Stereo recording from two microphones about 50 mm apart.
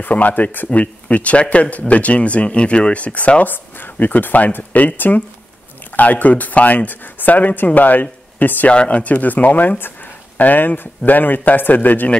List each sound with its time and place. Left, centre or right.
0.0 s speech: left
8.7 s speech: left